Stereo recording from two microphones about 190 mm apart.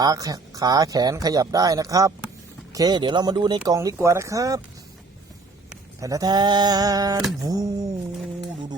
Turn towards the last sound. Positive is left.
turn(degrees=-20)  # may be behind; listen again after turning